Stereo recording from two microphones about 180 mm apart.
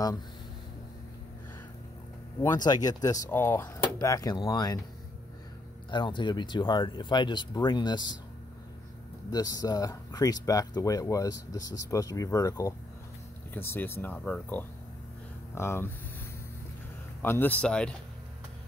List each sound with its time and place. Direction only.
2.4 s speech: 20° left (ahead or behind)
5.9 s speech: 25° left (ahead or behind)
9.3 s speech: 20° left (ahead or behind)
17.2 s speech: 10° left (ahead or behind)